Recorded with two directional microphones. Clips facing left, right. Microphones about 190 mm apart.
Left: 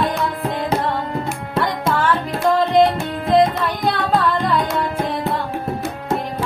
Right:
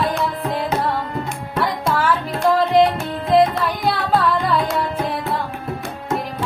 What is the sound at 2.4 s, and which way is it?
Music, centre (ahead or behind).